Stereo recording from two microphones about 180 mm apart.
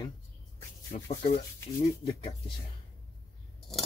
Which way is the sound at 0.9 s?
35° left (ahead or behind).